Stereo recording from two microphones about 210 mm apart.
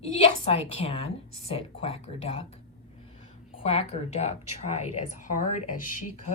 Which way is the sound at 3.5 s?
30° left (ahead or behind).